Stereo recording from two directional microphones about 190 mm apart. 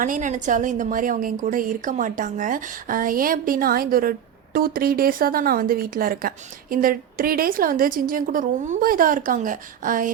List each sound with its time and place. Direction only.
0.0 s speech: 45° right (ahead or behind)